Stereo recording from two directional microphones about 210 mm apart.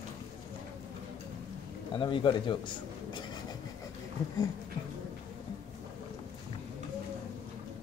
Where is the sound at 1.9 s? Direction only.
25° left (ahead or behind).